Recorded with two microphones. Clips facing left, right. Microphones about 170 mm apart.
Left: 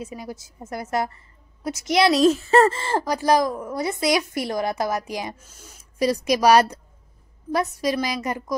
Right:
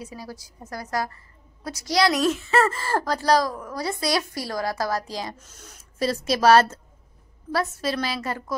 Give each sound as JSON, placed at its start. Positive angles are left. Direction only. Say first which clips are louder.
{"t": 0.0, "sound": "a woman's voice", "louder": "left 4 dB", "side_deg": 20}
{"t": 2.2, "sound": "a woman's voice", "louder": "left 5 dB", "side_deg": 35}